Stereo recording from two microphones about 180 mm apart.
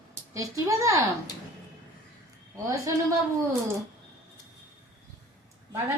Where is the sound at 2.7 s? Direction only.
20° right (ahead or behind).